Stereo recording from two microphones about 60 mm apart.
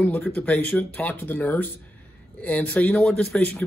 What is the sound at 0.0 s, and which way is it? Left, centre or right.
Speech, left.